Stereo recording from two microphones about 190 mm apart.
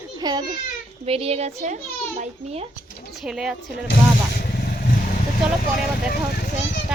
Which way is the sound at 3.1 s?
Centre (ahead or behind).